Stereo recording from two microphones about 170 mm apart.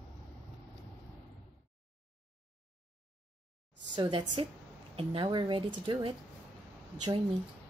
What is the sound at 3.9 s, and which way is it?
A woman's voice, 30° right (ahead or behind).